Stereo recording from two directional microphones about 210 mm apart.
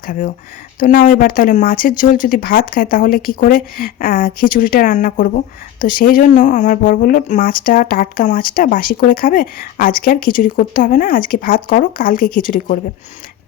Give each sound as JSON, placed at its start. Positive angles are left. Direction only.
{"t": 0.8, "sound": "speech", "side_deg": 40}